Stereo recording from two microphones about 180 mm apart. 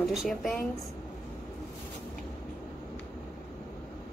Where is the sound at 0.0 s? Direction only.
Centre (ahead or behind).